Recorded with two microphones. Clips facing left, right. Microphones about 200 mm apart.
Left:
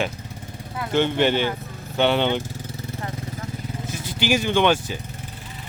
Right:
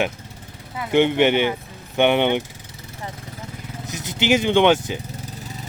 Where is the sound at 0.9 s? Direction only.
15° right (ahead or behind).